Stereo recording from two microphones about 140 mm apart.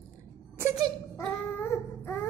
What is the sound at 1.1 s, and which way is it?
Baby cry, 10° left (ahead or behind).